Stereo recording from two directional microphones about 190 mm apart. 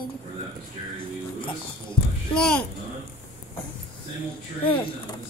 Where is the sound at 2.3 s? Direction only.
5° left (ahead or behind).